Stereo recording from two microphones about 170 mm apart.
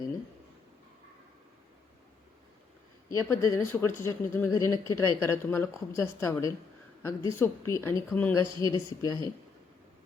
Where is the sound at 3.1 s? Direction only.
15° left (ahead or behind).